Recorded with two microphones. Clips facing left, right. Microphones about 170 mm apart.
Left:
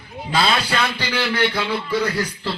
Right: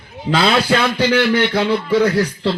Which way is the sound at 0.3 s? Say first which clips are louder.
Right 6 dB; 70° right (ahead or behind).